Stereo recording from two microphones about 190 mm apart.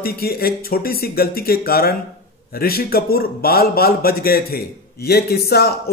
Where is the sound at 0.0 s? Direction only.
55° left (ahead or behind).